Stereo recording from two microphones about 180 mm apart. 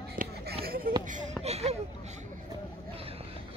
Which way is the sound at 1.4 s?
35° right (ahead or behind).